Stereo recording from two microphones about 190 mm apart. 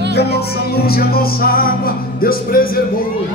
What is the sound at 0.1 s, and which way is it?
Music, 60° left (ahead or behind).